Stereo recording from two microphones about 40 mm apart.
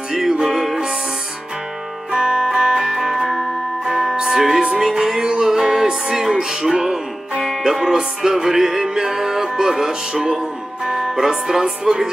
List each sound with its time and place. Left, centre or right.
0.1 s music: centre
2.0 s music: right
10.9 s speech: centre